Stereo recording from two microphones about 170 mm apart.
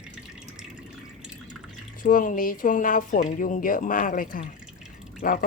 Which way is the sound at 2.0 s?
55° left (ahead or behind).